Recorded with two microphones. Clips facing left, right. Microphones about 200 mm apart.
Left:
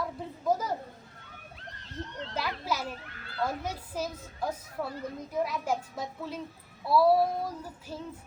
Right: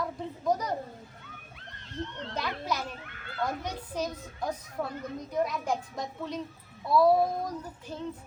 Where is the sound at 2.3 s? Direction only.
5° left (ahead or behind).